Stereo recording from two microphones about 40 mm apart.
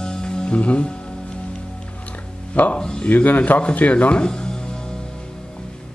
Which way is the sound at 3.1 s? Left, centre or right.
Left.